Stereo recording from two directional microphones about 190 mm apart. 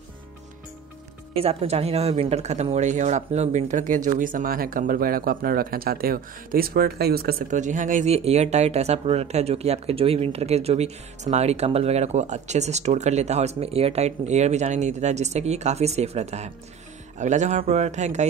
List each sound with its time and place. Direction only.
1.3 s speech: 30° right (ahead or behind)